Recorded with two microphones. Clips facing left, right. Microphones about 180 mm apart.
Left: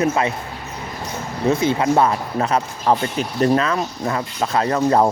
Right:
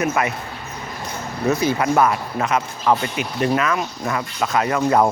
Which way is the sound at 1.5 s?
25° left (ahead or behind).